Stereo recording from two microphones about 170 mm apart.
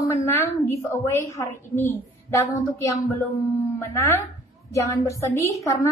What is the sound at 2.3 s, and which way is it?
A woman's voice, 20° left (ahead or behind).